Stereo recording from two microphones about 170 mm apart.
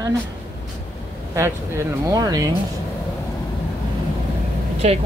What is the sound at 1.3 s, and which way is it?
Speech, 15° right (ahead or behind).